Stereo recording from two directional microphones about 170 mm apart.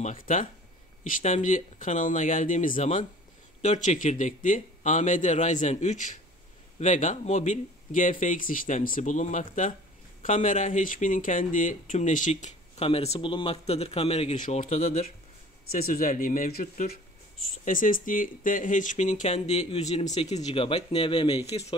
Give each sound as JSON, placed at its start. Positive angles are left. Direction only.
{"t": 0.0, "sound": "speech", "side_deg": 50}
{"t": 15.7, "sound": "speech", "side_deg": 55}